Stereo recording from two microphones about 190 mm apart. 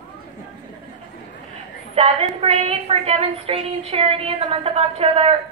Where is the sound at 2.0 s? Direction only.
30° right (ahead or behind).